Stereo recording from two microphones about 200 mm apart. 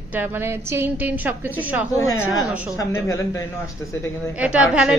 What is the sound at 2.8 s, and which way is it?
Speech, 15° left (ahead or behind).